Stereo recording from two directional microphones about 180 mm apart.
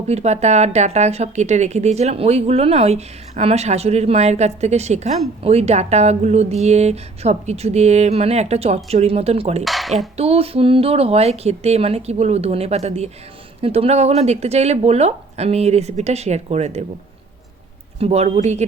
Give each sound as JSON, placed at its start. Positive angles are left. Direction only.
{"t": 0.1, "sound": "a woman's voice", "side_deg": -35}
{"t": 9.6, "sound": "speech", "side_deg": 0}
{"t": 10.2, "sound": "a woman's voice", "side_deg": -35}
{"t": 18.0, "sound": "a woman's voice", "side_deg": -35}